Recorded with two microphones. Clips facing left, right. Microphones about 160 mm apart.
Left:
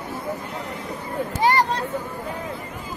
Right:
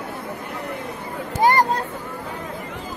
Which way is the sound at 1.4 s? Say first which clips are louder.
Right 3 dB; 45° right (ahead or behind).